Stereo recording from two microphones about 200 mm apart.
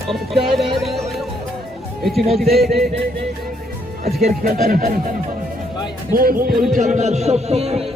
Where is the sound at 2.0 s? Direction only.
Centre (ahead or behind).